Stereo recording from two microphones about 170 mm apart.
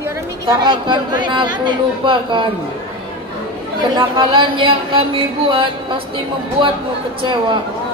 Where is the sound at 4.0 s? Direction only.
30° right (ahead or behind).